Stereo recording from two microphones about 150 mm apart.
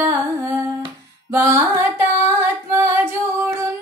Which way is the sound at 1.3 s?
20° right (ahead or behind).